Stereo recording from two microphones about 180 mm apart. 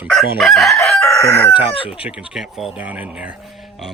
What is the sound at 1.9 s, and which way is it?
Speech, 5° right (ahead or behind).